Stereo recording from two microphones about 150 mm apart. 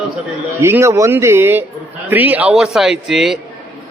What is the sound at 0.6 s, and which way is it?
A man's voice, 15° right (ahead or behind).